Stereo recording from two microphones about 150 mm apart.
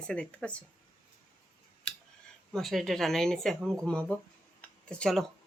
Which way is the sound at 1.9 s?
5° left (ahead or behind).